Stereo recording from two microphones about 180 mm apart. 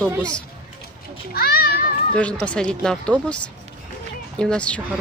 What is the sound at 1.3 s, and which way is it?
Speech, 60° left (ahead or behind).